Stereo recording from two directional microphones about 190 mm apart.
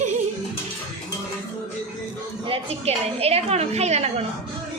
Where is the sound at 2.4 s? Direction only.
30° right (ahead or behind).